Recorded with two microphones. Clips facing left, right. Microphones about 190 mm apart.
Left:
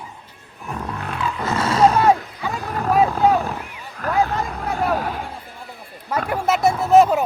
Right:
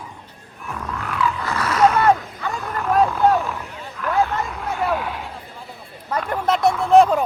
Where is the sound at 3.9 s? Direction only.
40° left (ahead or behind).